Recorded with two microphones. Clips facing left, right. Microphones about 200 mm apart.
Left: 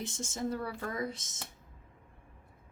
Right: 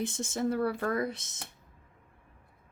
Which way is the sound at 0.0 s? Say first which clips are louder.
Right 5 dB; 60° right (ahead or behind).